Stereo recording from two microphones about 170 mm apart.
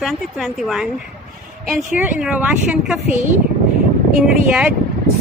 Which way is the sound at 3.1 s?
45° right (ahead or behind).